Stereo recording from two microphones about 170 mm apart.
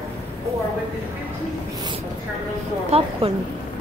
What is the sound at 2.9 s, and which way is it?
Speech, 35° right (ahead or behind).